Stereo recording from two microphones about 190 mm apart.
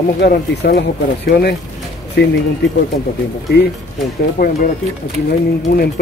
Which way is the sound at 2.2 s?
60° left (ahead or behind).